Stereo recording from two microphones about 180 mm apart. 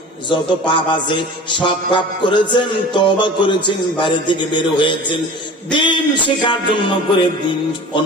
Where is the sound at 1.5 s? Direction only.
25° left (ahead or behind).